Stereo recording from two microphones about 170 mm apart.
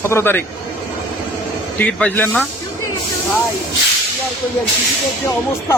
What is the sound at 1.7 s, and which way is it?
Speech, 10° left (ahead or behind).